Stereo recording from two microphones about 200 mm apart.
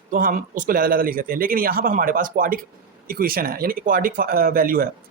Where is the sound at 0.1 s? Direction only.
45° right (ahead or behind).